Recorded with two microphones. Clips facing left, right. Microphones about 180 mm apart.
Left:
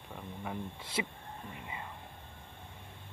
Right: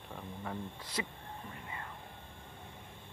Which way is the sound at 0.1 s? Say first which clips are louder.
Left 1 dB; 10° left (ahead or behind).